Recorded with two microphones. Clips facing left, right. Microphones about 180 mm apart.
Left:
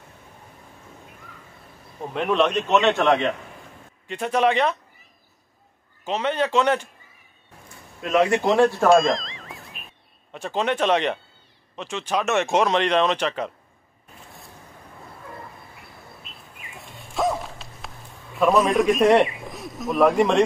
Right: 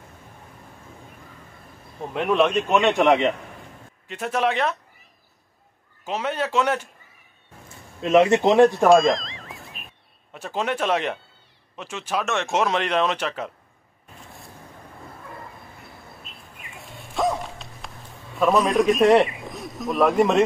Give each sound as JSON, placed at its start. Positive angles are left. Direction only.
{"t": 2.1, "sound": "a man's voice", "side_deg": -5}
{"t": 4.1, "sound": "speech", "side_deg": 0}
{"t": 6.0, "sound": "a man's voice", "side_deg": -5}
{"t": 7.6, "sound": "speech", "side_deg": -25}
{"t": 8.8, "sound": "music", "side_deg": 0}
{"t": 10.3, "sound": "speech", "side_deg": -5}
{"t": 17.1, "sound": "a sound", "side_deg": 0}
{"t": 18.4, "sound": "a man's voice", "side_deg": 0}